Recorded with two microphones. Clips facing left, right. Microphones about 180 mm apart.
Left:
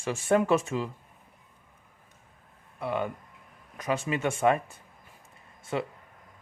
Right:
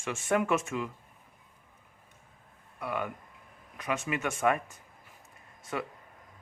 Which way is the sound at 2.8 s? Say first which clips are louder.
Left 4 dB; 25° left (ahead or behind).